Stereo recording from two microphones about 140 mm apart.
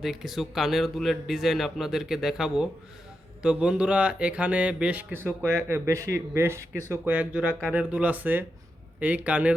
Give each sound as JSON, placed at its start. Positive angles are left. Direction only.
{"t": 0.0, "sound": "speech", "side_deg": 0}